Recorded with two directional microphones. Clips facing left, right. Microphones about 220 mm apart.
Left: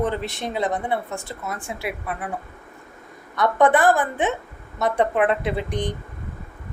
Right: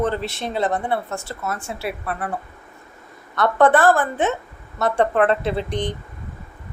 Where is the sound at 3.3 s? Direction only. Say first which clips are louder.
Right 2 dB; 15° left (ahead or behind).